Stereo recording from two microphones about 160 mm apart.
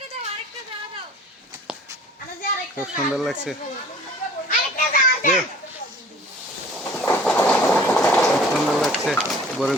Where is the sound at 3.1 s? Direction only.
Centre (ahead or behind).